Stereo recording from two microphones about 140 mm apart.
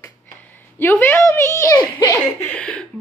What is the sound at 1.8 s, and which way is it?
Speech, 35° left (ahead or behind).